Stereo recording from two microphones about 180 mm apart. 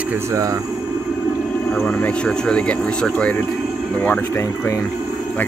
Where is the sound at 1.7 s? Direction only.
5° left (ahead or behind).